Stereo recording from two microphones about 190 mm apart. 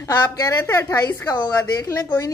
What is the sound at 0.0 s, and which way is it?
A woman's voice, 20° left (ahead or behind).